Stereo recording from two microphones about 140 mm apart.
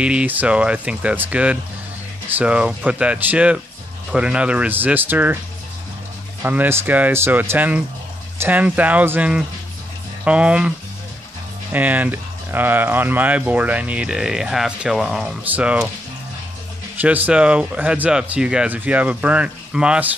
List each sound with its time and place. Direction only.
0.0 s speech: 10° right (ahead or behind)
6.4 s speech: 15° right (ahead or behind)
11.7 s speech: 10° right (ahead or behind)
17.0 s speech: 10° right (ahead or behind)